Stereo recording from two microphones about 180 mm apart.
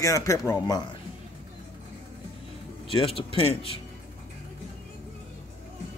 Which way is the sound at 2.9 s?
30° left (ahead or behind).